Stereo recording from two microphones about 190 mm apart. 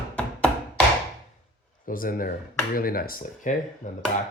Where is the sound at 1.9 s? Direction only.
50° left (ahead or behind).